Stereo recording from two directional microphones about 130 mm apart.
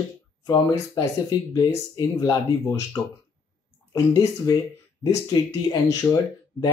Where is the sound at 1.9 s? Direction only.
25° left (ahead or behind).